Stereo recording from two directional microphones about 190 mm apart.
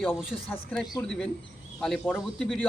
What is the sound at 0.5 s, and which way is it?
Speech, 5° left (ahead or behind).